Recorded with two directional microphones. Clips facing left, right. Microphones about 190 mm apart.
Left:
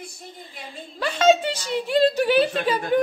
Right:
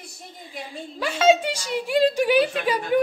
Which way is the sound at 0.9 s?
10° right (ahead or behind).